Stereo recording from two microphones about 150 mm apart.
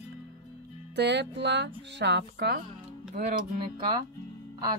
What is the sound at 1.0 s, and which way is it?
Speech, 90° right.